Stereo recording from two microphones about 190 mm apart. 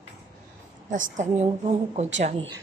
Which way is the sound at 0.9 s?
40° right (ahead or behind).